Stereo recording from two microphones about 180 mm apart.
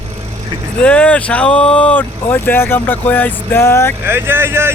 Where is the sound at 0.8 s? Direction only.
5° left (ahead or behind).